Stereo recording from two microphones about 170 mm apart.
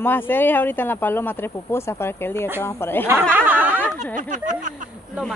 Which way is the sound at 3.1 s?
15° right (ahead or behind).